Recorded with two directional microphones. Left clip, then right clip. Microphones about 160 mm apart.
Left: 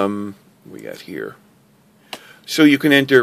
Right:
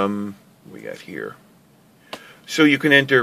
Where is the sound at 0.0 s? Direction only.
40° left (ahead or behind).